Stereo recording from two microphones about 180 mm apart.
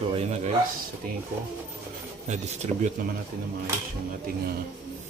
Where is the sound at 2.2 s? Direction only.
40° right (ahead or behind).